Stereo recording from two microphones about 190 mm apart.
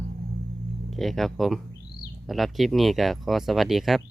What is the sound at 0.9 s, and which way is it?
Speech, centre (ahead or behind).